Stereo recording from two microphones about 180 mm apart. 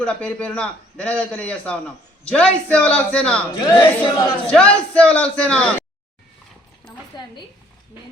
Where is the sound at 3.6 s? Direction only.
25° left (ahead or behind).